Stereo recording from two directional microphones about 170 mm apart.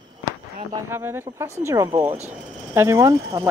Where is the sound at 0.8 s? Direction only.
15° right (ahead or behind).